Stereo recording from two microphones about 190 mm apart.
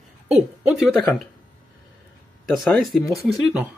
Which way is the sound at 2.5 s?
Centre (ahead or behind).